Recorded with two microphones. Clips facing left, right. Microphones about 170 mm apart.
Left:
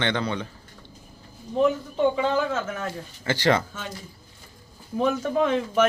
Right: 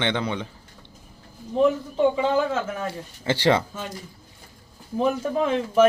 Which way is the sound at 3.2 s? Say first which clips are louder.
Right 2 dB; 25° right (ahead or behind).